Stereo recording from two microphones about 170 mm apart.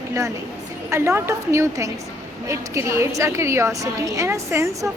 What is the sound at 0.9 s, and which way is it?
A woman's voice, 15° right (ahead or behind).